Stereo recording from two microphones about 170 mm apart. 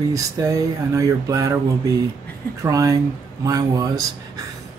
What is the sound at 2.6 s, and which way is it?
Speech, 20° right (ahead or behind).